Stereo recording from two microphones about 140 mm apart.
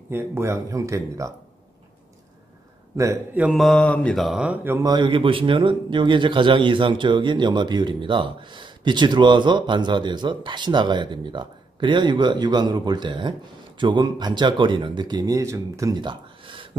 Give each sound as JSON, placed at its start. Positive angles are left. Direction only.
{"t": 0.1, "sound": "speech", "side_deg": -20}
{"t": 3.3, "sound": "mantra", "side_deg": 0}
{"t": 4.8, "sound": "speech", "side_deg": -30}